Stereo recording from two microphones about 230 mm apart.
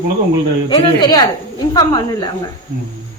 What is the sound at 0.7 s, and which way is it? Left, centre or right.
Speech, centre.